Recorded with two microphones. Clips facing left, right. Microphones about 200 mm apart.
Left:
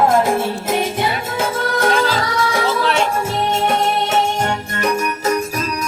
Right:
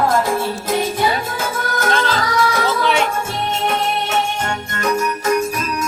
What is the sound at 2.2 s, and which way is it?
Music, 30° left (ahead or behind).